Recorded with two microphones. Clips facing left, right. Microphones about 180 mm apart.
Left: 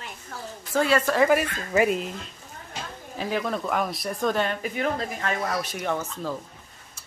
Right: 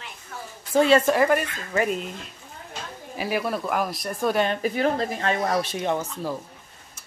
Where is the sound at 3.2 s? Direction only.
10° right (ahead or behind).